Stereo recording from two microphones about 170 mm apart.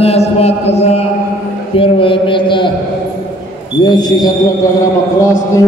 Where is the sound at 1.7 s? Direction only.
30° left (ahead or behind).